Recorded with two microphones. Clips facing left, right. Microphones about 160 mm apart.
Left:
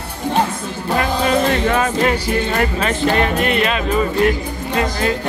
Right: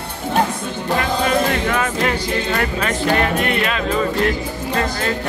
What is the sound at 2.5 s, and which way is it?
Speech, 25° left (ahead or behind).